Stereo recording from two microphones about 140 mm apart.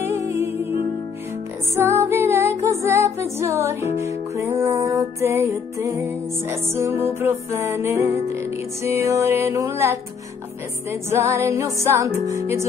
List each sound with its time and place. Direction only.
0.0 s music: 20° right (ahead or behind)
1.8 s music: 20° right (ahead or behind)